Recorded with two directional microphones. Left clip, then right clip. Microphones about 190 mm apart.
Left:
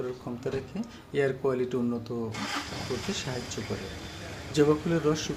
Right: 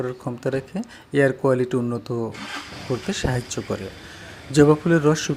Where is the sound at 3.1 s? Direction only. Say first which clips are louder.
Right 8 dB; 45° right (ahead or behind).